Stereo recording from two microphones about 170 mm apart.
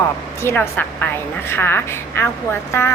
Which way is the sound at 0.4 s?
15° left (ahead or behind).